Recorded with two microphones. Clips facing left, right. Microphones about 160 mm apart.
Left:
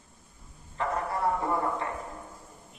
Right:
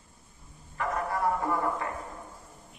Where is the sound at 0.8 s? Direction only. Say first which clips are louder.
Even; 25° left (ahead or behind).